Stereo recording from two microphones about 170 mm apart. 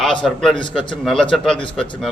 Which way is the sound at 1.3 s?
Centre (ahead or behind).